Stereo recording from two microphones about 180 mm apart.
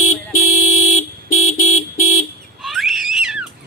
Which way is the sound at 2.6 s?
Centre (ahead or behind).